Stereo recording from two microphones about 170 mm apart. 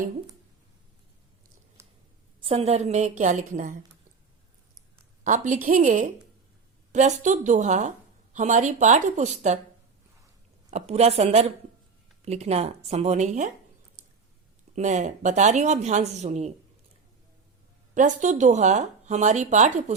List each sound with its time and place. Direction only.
1.8 s scissors: 15° right (ahead or behind)
2.4 s a woman's voice: 35° right (ahead or behind)
5.2 s a woman's voice: 45° right (ahead or behind)
10.7 s a woman's voice: 40° right (ahead or behind)
14.8 s a woman's voice: 45° right (ahead or behind)
17.9 s a woman's voice: 45° right (ahead or behind)